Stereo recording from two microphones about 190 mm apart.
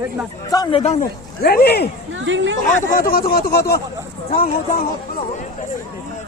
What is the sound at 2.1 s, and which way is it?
Speech, 80° right.